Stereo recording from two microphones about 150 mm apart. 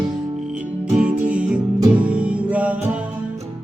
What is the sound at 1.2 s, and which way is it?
Music, 10° right (ahead or behind).